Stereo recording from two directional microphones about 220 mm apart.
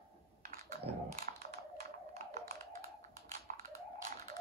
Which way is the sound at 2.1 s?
30° right (ahead or behind).